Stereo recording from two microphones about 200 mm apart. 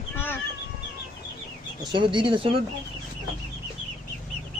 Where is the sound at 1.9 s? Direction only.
25° right (ahead or behind).